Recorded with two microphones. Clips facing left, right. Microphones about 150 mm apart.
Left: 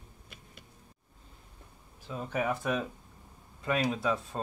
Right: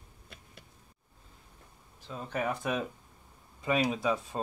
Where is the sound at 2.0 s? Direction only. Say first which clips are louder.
Left 2 dB; 5° left (ahead or behind).